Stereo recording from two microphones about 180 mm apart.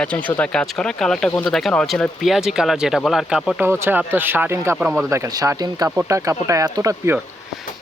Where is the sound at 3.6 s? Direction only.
15° right (ahead or behind).